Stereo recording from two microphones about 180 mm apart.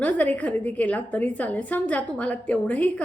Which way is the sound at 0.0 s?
10° left (ahead or behind).